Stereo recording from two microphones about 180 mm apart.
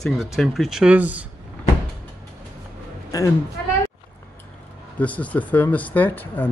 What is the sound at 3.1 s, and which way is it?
Speech, 20° left (ahead or behind).